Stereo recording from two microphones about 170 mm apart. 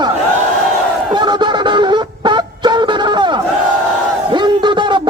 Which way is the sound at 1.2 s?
25° right (ahead or behind).